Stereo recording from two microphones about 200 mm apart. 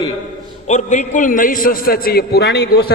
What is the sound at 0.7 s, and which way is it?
A man's voice, 35° left (ahead or behind).